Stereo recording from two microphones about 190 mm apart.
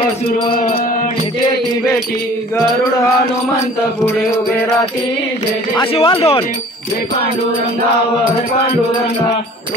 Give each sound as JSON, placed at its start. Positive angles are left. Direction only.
{"t": 0.5, "sound": "music", "side_deg": 45}
{"t": 5.9, "sound": "speech", "side_deg": 30}